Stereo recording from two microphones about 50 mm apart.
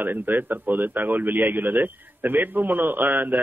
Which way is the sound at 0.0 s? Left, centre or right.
Right.